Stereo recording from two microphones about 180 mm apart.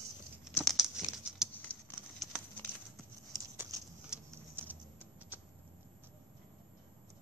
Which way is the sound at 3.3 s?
20° right (ahead or behind).